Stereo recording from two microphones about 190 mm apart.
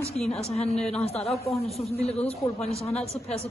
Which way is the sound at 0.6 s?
5° left (ahead or behind).